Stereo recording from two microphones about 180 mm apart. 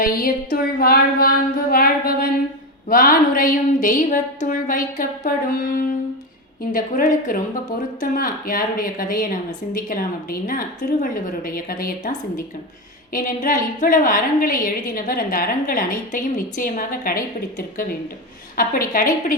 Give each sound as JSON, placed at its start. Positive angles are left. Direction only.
{"t": 0.0, "sound": "a sound", "side_deg": 55}
{"t": 2.9, "sound": "a woman's voice", "side_deg": 50}
{"t": 6.7, "sound": "a woman's voice", "side_deg": 45}